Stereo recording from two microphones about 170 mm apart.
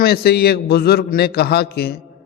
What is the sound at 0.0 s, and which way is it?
A man's voice, 65° left (ahead or behind).